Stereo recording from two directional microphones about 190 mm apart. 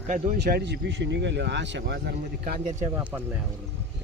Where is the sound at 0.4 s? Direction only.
60° right (ahead or behind).